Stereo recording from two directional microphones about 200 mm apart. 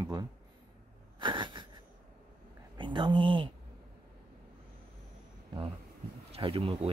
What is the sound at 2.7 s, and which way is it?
Speech, 25° right (ahead or behind).